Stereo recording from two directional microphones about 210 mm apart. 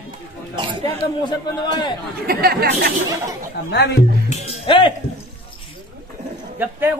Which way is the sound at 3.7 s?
55° left (ahead or behind).